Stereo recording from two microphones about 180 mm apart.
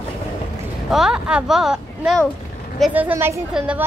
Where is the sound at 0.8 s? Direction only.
5° right (ahead or behind).